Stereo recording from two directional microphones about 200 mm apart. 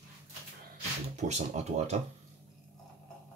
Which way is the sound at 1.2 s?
35° right (ahead or behind).